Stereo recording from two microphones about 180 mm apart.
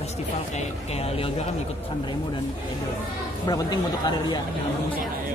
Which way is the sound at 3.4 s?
20° left (ahead or behind).